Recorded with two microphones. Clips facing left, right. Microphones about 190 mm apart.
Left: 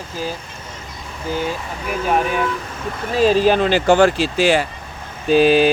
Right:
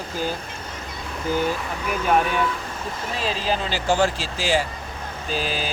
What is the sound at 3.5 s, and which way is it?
Speech, 65° left (ahead or behind).